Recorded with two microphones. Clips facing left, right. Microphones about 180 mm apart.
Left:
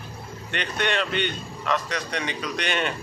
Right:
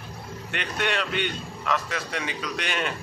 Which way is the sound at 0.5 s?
5° right (ahead or behind).